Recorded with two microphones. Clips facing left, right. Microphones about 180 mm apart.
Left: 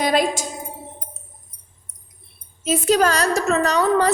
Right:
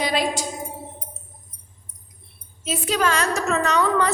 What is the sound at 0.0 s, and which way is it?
Speech, 45° left (ahead or behind).